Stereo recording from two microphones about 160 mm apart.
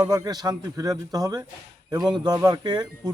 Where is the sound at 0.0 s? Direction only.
20° right (ahead or behind).